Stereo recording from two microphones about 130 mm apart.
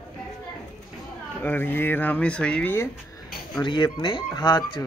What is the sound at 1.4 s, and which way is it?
Speech, 15° left (ahead or behind).